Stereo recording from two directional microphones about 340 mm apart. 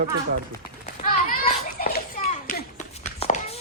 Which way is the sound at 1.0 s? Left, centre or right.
Left.